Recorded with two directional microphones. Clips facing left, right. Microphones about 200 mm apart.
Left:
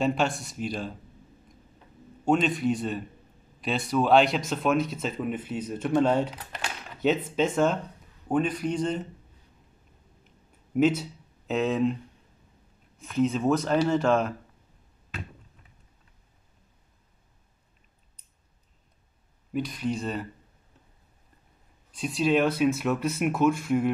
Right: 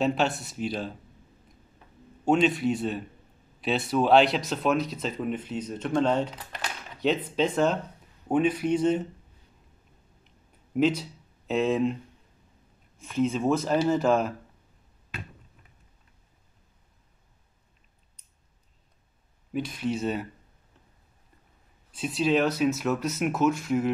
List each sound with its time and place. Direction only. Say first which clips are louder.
0.0 s speech: even; centre (ahead or behind)
2.2 s speech: right 1 dB; 5° right (ahead or behind)
4.7 s speech: left 2 dB; 50° left (ahead or behind)
5.0 s speech: even; 5° left (ahead or behind)
10.7 s speech: left 1 dB; 5° left (ahead or behind)
13.0 s speech: left 1 dB; centre (ahead or behind)
19.5 s speech: even; centre (ahead or behind)
21.9 s speech: even; centre (ahead or behind)